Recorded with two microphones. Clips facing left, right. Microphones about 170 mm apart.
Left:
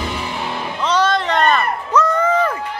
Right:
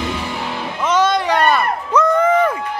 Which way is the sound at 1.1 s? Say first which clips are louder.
Right 1 dB; 10° right (ahead or behind).